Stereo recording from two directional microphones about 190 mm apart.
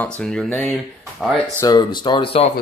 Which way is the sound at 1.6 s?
20° left (ahead or behind).